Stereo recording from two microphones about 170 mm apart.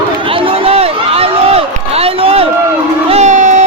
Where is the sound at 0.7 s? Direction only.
35° right (ahead or behind).